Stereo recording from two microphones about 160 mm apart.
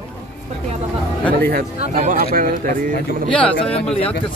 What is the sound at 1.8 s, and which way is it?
Speech, 50° right (ahead or behind).